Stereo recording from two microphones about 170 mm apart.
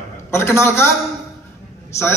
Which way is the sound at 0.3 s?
15° left (ahead or behind).